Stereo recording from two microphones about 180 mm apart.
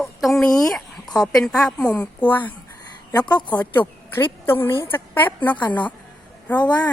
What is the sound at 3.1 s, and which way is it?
Speech, 20° left (ahead or behind).